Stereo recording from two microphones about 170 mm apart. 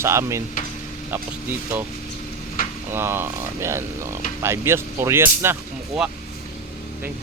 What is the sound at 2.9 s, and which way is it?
Speech, 15° right (ahead or behind).